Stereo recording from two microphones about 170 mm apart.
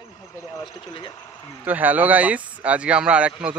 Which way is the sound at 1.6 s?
10° right (ahead or behind).